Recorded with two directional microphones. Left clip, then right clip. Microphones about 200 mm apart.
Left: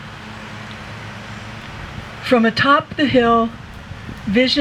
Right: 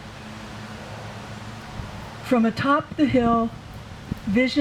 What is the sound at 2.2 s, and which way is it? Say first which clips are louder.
Speech: left 7 dB; 20° left (ahead or behind).